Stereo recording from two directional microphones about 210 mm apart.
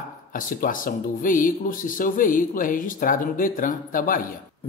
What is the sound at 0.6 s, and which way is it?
Speech, 40° left (ahead or behind).